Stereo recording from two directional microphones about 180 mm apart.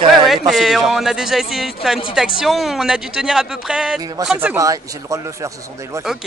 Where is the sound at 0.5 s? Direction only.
Centre (ahead or behind).